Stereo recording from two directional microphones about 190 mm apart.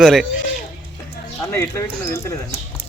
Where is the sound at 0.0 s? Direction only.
Centre (ahead or behind).